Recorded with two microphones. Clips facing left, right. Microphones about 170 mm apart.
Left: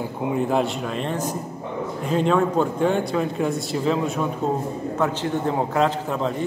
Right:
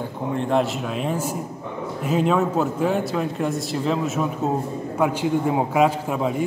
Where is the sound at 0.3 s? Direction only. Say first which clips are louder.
Right 1 dB; 5° left (ahead or behind).